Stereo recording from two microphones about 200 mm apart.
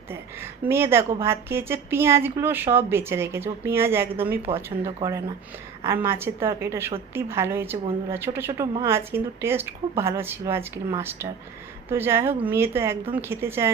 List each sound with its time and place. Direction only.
0.1 s speech: 10° right (ahead or behind)
4.4 s speech: 30° right (ahead or behind)
5.8 s speech: 15° right (ahead or behind)